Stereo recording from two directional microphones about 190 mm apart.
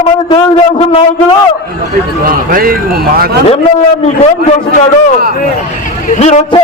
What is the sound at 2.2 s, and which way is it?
Speech, 50° right (ahead or behind).